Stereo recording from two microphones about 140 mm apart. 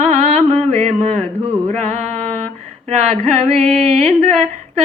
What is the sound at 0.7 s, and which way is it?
Female singing, 55° right (ahead or behind).